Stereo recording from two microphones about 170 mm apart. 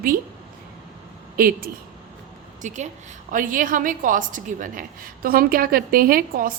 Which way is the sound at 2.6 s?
45° right (ahead or behind).